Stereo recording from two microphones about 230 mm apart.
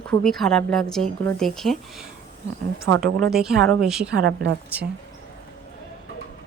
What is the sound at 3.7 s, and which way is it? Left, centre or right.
Speech, centre.